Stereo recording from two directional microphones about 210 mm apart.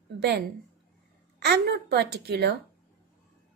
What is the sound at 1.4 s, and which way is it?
Speech, 50° right (ahead or behind).